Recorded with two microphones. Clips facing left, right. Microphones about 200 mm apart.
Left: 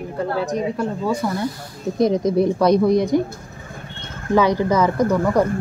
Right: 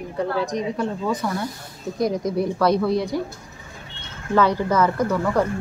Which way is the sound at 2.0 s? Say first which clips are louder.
Left 5 dB; 20° left (ahead or behind).